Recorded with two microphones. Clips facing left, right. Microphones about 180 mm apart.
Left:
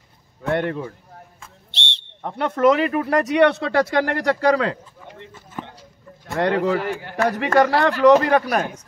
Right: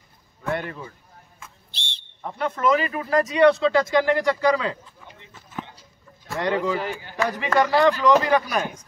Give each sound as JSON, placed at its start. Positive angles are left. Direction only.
{"t": 0.4, "sound": "speech", "side_deg": 65}
{"t": 6.3, "sound": "a man's voice", "side_deg": 60}